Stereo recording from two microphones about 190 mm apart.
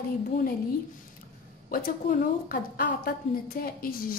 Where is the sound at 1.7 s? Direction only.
50° left (ahead or behind).